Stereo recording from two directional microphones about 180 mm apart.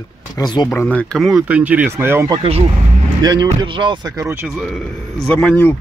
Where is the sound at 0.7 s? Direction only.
10° left (ahead or behind); by 2.3 s 15° right (ahead or behind).